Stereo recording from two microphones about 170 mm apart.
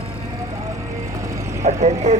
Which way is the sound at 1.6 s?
40° right (ahead or behind).